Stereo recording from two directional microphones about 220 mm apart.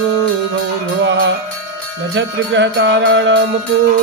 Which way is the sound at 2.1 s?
55° right (ahead or behind).